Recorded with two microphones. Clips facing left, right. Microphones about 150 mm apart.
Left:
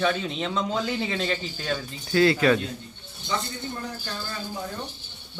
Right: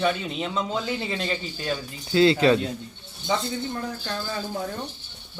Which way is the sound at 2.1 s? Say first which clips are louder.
Right 2 dB; 25° right (ahead or behind).